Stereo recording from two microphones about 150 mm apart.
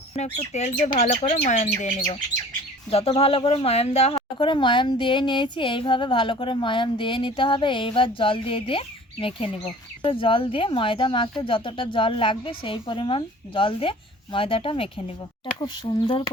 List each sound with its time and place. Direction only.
0.2 s speech: 50° left (ahead or behind)
2.9 s speech: 40° left (ahead or behind)
10.0 s speech: 35° left (ahead or behind)